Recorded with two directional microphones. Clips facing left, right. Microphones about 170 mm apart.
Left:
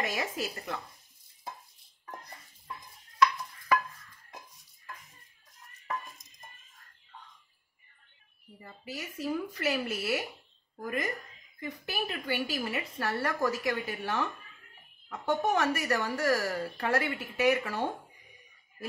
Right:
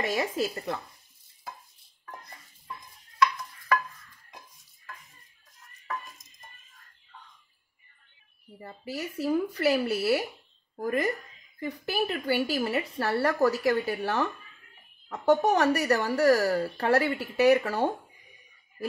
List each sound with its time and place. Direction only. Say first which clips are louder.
0.1 s speech: right 6 dB; 30° right (ahead or behind)
8.5 s speech: right 6 dB; 35° right (ahead or behind)